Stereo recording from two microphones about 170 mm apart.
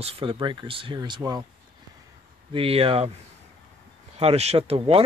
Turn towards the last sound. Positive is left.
turn(degrees=-35)  # may be behind; listen again after turning